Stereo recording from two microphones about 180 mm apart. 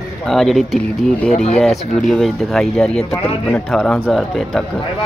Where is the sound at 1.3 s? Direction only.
35° left (ahead or behind).